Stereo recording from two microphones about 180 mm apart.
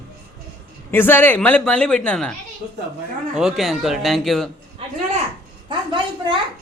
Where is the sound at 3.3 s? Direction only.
Centre (ahead or behind).